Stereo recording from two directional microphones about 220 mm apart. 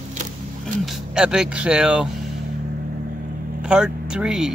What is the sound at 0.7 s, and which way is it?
Speech, centre (ahead or behind).